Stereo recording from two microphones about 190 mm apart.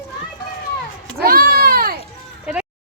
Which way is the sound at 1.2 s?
50° right (ahead or behind).